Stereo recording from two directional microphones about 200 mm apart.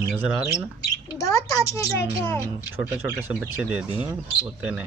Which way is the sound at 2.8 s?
10° right (ahead or behind).